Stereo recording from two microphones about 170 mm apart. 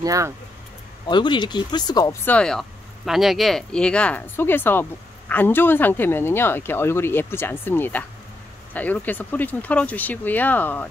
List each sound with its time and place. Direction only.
0.0 s speech: 20° right (ahead or behind)
1.0 s speech: 25° left (ahead or behind)
2.2 s speech: 5° left (ahead or behind)